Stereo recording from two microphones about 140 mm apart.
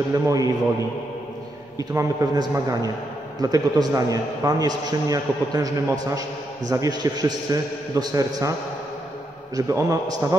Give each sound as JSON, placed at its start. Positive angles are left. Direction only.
{"t": 0.1, "sound": "a man's voice", "side_deg": -25}
{"t": 1.8, "sound": "a man's voice", "side_deg": -25}
{"t": 9.6, "sound": "a man's voice", "side_deg": -20}